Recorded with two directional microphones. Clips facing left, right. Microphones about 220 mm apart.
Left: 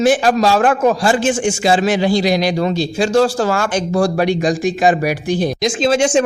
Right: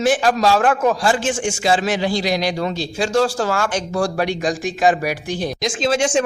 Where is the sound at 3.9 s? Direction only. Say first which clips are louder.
Left 6 dB; 25° left (ahead or behind).